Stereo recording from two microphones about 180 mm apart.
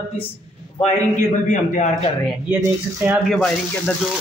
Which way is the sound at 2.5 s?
10° right (ahead or behind).